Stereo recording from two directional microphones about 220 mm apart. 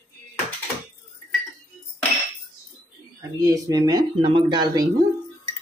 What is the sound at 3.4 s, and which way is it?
Speech, 15° right (ahead or behind).